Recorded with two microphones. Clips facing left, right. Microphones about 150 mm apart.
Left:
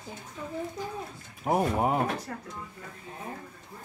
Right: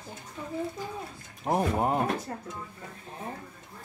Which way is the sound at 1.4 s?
5° left (ahead or behind).